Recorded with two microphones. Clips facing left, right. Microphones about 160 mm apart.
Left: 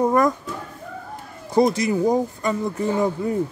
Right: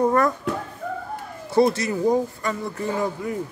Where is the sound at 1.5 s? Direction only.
15° left (ahead or behind).